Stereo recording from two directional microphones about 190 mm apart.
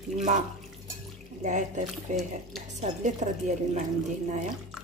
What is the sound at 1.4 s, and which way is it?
Speech, 40° right (ahead or behind).